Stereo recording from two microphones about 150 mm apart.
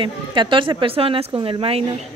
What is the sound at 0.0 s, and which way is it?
A woman's voice, 35° right (ahead or behind).